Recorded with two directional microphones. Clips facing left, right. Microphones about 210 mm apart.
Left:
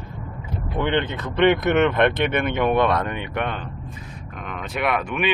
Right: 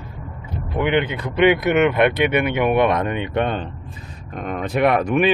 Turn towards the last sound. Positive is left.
turn(degrees=-40)  # may be behind; listen again after turning